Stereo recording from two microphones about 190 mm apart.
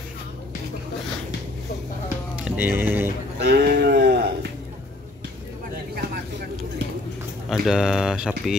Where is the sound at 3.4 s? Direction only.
60° right (ahead or behind).